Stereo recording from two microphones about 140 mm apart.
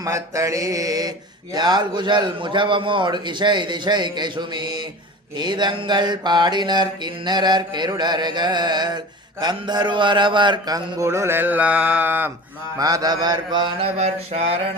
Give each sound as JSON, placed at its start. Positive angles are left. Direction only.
{"t": 0.0, "sound": "a man's voice", "side_deg": -25}
{"t": 1.5, "sound": "mantra", "side_deg": -30}
{"t": 9.4, "sound": "a man's voice", "side_deg": -30}
{"t": 12.8, "sound": "mantra", "side_deg": -25}